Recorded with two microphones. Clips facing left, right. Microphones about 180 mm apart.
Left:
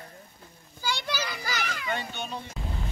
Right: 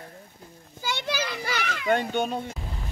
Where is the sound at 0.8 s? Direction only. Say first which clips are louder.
Right 2 dB; 20° right (ahead or behind).